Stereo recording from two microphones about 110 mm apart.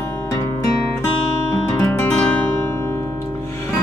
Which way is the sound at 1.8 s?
20° left (ahead or behind).